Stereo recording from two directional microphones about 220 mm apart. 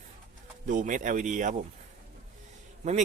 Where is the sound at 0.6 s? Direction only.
35° right (ahead or behind).